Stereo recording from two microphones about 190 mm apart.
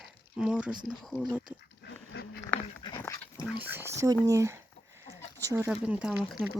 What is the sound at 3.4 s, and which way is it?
Speech, 5° right (ahead or behind).